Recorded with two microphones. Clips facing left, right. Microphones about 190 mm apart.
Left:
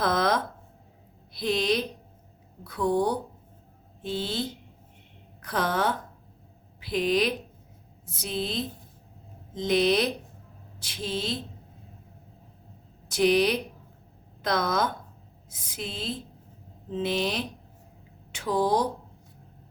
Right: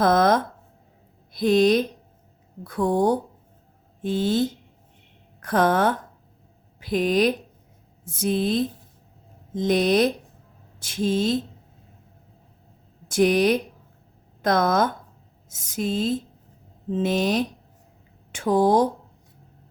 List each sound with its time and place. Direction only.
0.0 s a sound: 45° right (ahead or behind)
1.3 s a woman's voice: 45° right (ahead or behind)
13.1 s a woman's voice: 50° right (ahead or behind)